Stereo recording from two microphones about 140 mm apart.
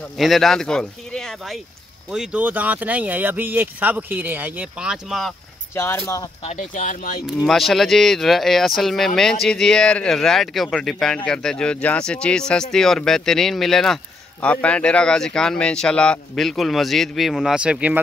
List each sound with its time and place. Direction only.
0.2 s speech: centre (ahead or behind)
6.0 s speech: 25° left (ahead or behind)
6.4 s speech: 55° left (ahead or behind); by 7.2 s 75° left (ahead or behind)
7.2 s speech: centre (ahead or behind)